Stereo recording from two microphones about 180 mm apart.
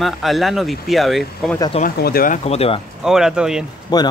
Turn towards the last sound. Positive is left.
turn(degrees=20)  # may be behind; listen again after turning